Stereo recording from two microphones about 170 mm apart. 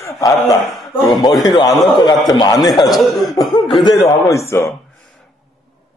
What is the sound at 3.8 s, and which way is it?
Speech, 20° left (ahead or behind).